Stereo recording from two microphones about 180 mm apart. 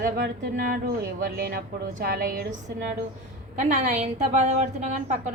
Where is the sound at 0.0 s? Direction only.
55° right (ahead or behind).